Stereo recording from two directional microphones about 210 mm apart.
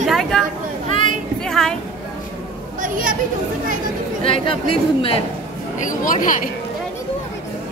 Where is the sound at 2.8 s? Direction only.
40° right (ahead or behind).